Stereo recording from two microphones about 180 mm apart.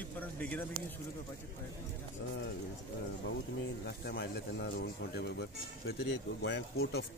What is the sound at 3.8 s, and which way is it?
Speech, 65° left (ahead or behind).